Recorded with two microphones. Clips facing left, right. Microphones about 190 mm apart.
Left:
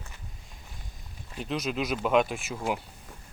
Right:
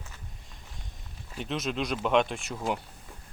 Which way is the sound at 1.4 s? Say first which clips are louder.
Left 1 dB; centre (ahead or behind).